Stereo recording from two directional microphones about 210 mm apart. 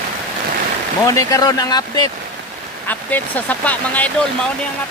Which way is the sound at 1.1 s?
15° left (ahead or behind).